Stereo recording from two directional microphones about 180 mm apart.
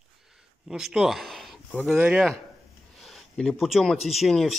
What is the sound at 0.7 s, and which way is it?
Speech, 5° right (ahead or behind).